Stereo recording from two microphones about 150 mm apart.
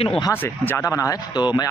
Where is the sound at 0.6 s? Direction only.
15° left (ahead or behind).